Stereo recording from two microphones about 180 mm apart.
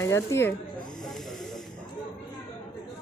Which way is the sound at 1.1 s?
Centre (ahead or behind).